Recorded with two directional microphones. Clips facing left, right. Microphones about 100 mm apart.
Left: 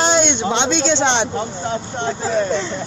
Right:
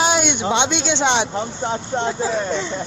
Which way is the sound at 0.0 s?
5° right (ahead or behind).